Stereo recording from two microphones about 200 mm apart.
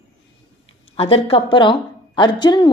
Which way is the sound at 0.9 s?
30° left (ahead or behind).